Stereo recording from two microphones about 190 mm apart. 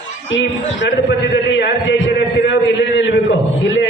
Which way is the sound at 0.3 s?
70° left (ahead or behind).